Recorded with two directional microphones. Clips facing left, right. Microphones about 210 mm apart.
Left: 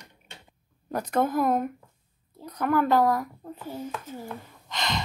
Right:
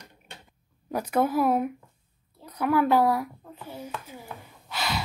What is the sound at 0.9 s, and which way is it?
A woman's voice, 10° right (ahead or behind).